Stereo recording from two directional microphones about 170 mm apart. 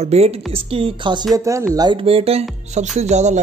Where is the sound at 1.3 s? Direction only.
20° right (ahead or behind).